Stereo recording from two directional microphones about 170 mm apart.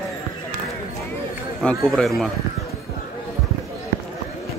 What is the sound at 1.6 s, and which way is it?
Speech, 5° left (ahead or behind).